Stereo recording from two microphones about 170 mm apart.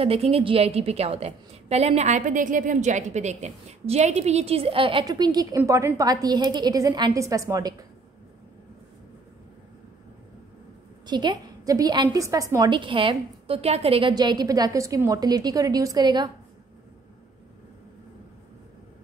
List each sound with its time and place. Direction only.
0.0 s a woman's voice: 35° right (ahead or behind); by 7.7 s 20° right (ahead or behind)
11.1 s a woman's voice: 25° right (ahead or behind)